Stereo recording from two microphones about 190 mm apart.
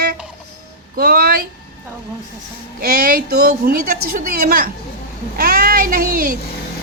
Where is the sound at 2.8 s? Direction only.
55° right (ahead or behind).